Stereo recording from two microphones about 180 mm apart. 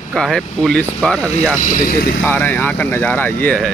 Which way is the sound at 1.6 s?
45° left (ahead or behind).